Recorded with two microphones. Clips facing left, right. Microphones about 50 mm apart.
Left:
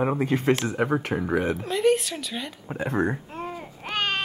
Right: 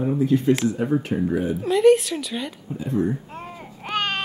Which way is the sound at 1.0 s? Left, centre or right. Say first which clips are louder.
Right 1 dB; left.